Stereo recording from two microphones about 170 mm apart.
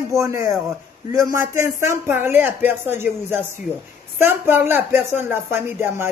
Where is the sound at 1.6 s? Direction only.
15° right (ahead or behind).